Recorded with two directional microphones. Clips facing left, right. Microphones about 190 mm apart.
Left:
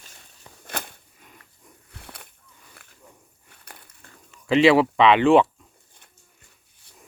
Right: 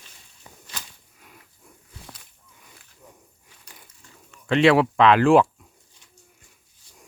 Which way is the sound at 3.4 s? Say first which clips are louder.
Left 5 dB; 60° left (ahead or behind).